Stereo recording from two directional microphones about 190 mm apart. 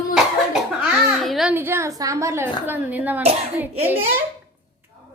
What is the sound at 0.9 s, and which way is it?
A child's voice, centre (ahead or behind).